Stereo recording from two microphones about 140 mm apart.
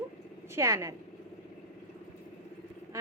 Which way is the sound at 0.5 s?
20° right (ahead or behind).